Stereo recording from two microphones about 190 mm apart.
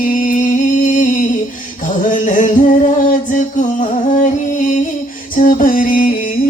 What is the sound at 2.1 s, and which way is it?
Music, 40° left (ahead or behind).